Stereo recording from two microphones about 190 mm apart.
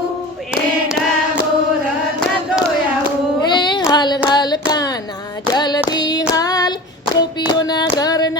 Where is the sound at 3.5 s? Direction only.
25° left (ahead or behind).